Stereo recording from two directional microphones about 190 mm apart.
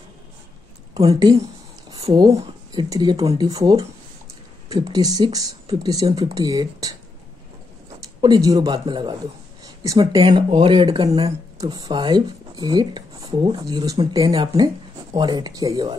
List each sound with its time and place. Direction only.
0.9 s speech: 20° right (ahead or behind)
1.9 s a sound: 25° right (ahead or behind)
2.7 s speech: 20° right (ahead or behind)
8.2 s speech: 20° right (ahead or behind)